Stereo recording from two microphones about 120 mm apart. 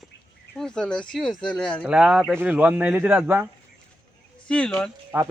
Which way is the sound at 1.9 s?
5° right (ahead or behind).